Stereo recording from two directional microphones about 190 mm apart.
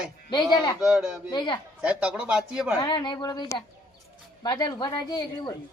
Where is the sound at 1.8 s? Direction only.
5° right (ahead or behind).